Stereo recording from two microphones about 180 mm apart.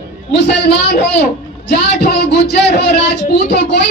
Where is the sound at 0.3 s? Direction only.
70° left (ahead or behind).